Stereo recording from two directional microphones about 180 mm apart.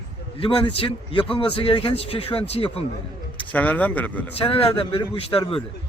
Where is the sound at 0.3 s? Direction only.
30° left (ahead or behind).